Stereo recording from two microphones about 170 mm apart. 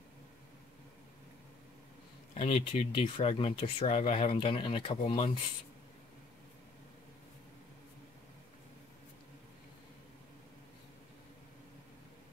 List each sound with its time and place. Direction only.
2.3 s speech: 40° left (ahead or behind)